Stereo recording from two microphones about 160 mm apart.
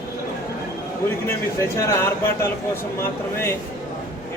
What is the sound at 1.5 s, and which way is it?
Speech, 15° left (ahead or behind).